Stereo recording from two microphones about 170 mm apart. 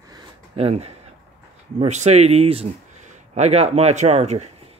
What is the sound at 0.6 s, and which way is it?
Speech, 35° right (ahead or behind).